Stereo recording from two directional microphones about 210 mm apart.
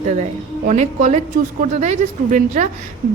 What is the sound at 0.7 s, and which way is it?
A woman's voice, 35° right (ahead or behind).